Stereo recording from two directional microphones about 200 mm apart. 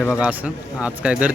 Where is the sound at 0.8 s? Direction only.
5° right (ahead or behind).